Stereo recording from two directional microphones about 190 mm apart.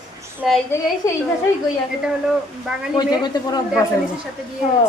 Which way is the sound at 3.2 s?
20° left (ahead or behind).